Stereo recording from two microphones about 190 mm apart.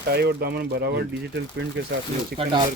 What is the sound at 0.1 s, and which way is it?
Speech, 60° right (ahead or behind).